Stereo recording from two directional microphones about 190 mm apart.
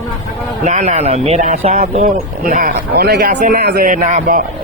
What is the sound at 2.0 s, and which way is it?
Speech, 50° right (ahead or behind).